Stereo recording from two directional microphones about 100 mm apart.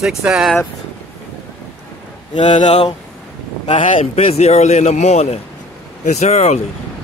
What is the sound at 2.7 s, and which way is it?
A man's voice, 90° left.